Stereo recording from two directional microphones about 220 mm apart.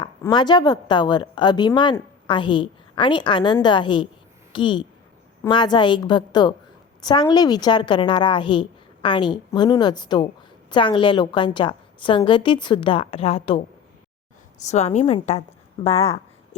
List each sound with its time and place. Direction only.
0.0 s a woman's voice: 20° left (ahead or behind)
14.7 s a woman's voice: 30° left (ahead or behind)